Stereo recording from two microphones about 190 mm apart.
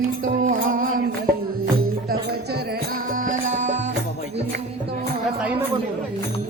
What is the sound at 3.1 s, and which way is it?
Music, 45° right (ahead or behind).